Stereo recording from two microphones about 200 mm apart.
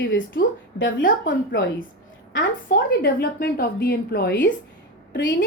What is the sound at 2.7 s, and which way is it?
A woman's voice, 50° left (ahead or behind).